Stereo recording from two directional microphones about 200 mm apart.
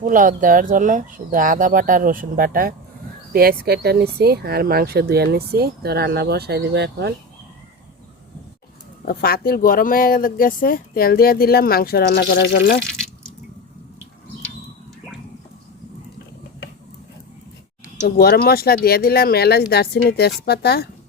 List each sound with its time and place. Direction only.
0.0 s speech: 40° right (ahead or behind); by 7.1 s 55° right (ahead or behind)
9.0 s speech: 50° left (ahead or behind)
12.8 s drip: 5° left (ahead or behind)
18.2 s speech: 50° left (ahead or behind)